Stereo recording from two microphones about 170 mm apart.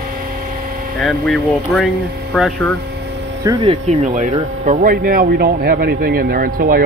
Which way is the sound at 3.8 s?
45° right (ahead or behind).